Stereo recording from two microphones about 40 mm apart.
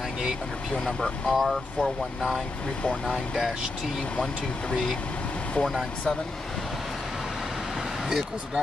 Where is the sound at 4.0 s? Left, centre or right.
Centre.